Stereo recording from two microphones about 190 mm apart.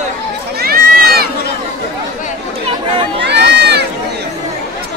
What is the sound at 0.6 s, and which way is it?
Run, 55° right (ahead or behind).